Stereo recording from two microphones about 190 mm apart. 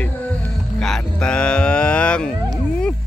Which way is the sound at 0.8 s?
5° left (ahead or behind).